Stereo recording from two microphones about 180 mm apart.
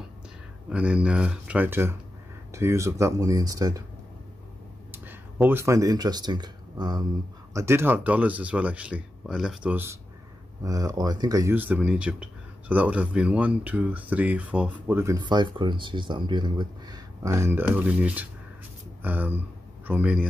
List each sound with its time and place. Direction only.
0.7 s speech: 5° right (ahead or behind)
4.9 s speech: 10° right (ahead or behind)